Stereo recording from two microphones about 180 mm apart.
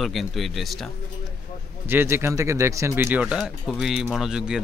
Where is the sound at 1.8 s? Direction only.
10° right (ahead or behind).